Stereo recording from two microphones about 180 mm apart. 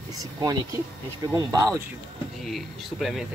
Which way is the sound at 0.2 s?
20° right (ahead or behind).